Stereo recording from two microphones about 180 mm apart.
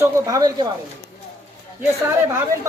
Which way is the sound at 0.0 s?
20° right (ahead or behind).